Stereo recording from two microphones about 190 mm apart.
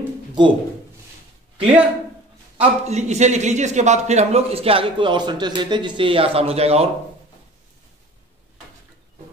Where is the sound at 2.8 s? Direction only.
35° right (ahead or behind).